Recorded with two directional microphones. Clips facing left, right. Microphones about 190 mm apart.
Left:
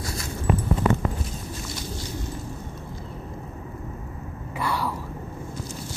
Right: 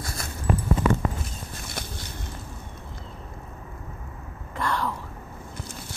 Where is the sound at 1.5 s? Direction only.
55° right (ahead or behind).